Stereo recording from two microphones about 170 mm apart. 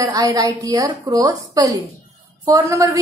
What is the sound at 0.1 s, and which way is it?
A woman's voice, 20° right (ahead or behind).